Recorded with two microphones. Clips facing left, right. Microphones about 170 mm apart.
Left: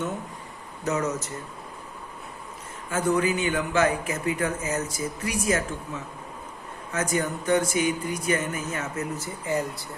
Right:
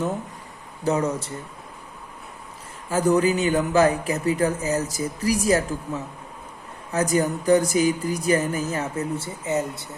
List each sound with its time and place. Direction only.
0.9 s speech: 30° right (ahead or behind)
2.9 s speech: 35° right (ahead or behind); by 9.8 s 20° right (ahead or behind)